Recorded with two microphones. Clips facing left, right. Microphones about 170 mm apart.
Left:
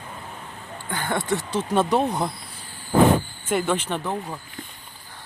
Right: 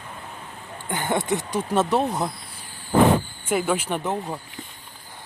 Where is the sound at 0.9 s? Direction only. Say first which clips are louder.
Right 1 dB; 20° right (ahead or behind).